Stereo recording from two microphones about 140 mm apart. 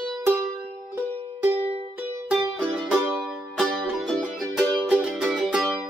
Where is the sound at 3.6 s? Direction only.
Centre (ahead or behind).